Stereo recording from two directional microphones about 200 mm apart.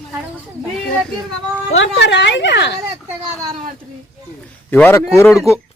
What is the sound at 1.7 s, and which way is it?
Speech, 70° left (ahead or behind).